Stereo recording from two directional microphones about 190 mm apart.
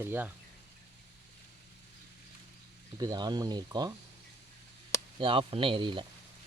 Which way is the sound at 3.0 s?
20° right (ahead or behind).